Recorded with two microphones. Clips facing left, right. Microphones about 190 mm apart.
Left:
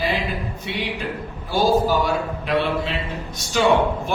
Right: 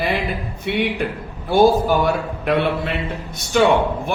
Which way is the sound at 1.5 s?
55° right (ahead or behind).